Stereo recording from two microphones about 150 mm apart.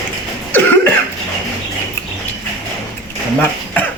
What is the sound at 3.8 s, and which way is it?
Cough, 15° left (ahead or behind).